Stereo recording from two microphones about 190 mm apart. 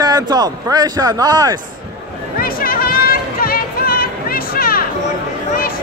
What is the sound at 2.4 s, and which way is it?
Music, 50° left (ahead or behind).